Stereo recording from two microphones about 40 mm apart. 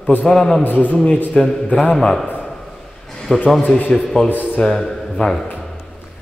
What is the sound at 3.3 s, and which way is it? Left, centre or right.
A man's voice, centre.